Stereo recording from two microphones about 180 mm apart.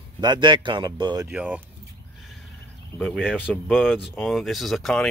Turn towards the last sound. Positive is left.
turn(degrees=0)  # may be behind; listen again after turning